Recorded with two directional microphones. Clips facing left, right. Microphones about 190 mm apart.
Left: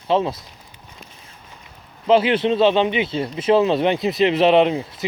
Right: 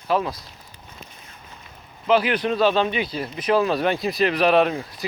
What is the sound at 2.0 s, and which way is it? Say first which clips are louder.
Speech: left 4 dB; 25° left (ahead or behind).